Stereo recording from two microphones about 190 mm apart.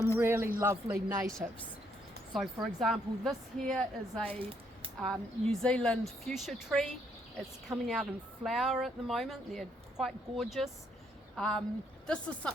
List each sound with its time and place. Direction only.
0.2 s speech: 15° right (ahead or behind)
2.3 s speech: centre (ahead or behind)
4.3 s speech: 30° right (ahead or behind)
5.1 s speech: 5° left (ahead or behind)